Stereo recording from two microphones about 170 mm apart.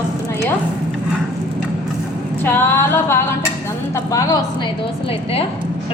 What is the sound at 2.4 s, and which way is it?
Female singing, 10° left (ahead or behind).